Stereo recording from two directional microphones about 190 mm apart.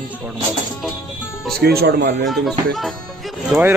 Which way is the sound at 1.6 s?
55° right (ahead or behind).